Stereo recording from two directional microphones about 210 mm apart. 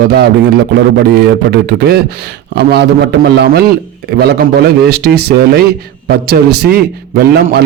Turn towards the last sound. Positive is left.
turn(degrees=-50)  # may be behind; listen again after turning